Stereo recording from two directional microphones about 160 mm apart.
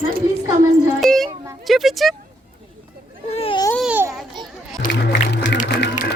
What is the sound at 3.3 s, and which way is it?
Baby cry, 35° left (ahead or behind).